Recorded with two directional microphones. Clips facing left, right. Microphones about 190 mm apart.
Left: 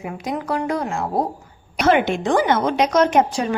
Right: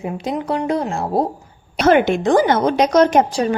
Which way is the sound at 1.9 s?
40° right (ahead or behind).